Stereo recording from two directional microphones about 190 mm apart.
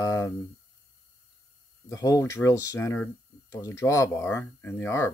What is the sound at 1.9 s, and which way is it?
Speech, 15° left (ahead or behind).